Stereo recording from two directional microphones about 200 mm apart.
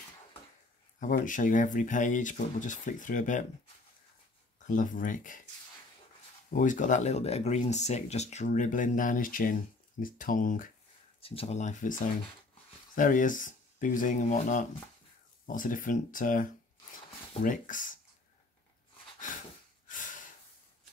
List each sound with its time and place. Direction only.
0.9 s speech: 40° left (ahead or behind)
4.6 s speech: 40° left (ahead or behind)
6.5 s speech: 40° left (ahead or behind)
11.1 s speech: 30° left (ahead or behind)
19.1 s a sound: 40° left (ahead or behind)
19.9 s gasp: 40° left (ahead or behind)